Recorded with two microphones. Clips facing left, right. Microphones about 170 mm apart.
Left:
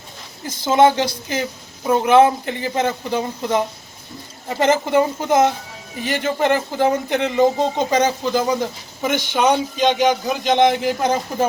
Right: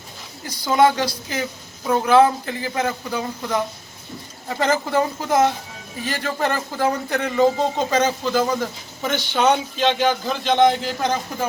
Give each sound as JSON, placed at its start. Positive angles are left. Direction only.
{"t": 0.4, "sound": "speech", "side_deg": 25}